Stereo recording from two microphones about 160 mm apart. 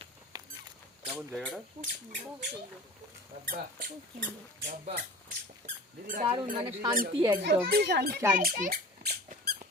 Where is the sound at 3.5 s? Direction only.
65° right (ahead or behind).